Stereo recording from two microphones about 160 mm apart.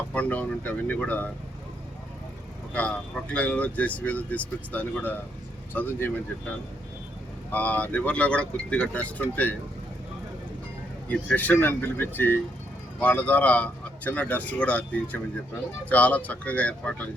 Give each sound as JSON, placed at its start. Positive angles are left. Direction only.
{"t": 0.1, "sound": "speech", "side_deg": 10}
{"t": 2.7, "sound": "speech", "side_deg": 10}
{"t": 7.5, "sound": "speech", "side_deg": 10}
{"t": 11.1, "sound": "speech", "side_deg": 10}